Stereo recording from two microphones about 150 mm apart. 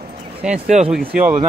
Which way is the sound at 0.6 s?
50° right (ahead or behind).